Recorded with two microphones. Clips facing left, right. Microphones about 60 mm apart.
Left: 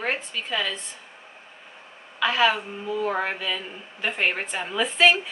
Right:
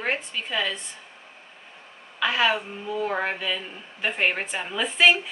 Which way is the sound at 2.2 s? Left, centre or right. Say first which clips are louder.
Left 1 dB; centre.